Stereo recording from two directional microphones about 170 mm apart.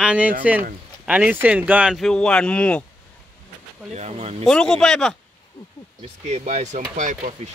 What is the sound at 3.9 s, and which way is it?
Speech, 40° right (ahead or behind).